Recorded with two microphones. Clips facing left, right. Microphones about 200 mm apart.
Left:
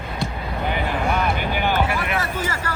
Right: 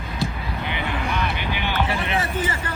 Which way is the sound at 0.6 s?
45° left (ahead or behind).